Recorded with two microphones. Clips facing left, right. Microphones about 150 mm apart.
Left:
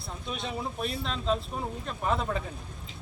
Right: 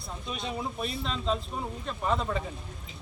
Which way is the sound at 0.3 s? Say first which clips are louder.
Even; centre (ahead or behind).